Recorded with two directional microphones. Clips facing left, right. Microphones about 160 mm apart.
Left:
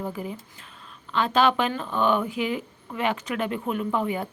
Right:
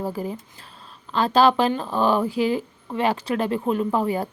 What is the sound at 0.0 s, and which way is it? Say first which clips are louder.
Speech: right 4 dB; 35° right (ahead or behind).